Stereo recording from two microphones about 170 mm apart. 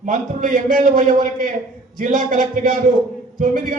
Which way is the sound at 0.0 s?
50° right (ahead or behind).